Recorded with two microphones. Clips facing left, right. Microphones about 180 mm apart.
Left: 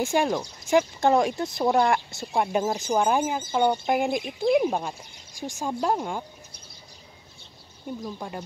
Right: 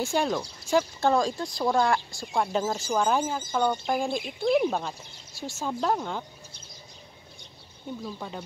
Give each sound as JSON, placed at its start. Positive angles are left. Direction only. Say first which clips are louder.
{"t": 0.0, "sound": "speech", "louder": "left 3 dB", "side_deg": 15}
{"t": 8.0, "sound": "speech", "louder": "left 1 dB", "side_deg": 10}